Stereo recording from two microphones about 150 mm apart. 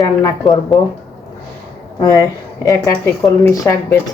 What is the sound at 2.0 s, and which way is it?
Speech, 25° left (ahead or behind).